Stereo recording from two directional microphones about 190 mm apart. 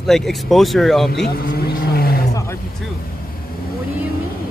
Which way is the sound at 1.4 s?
55° left (ahead or behind).